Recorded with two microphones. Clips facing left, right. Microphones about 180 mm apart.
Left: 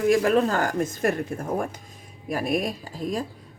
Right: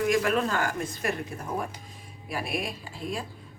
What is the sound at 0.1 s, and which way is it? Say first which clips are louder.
Speech: left 5 dB; 35° left (ahead or behind).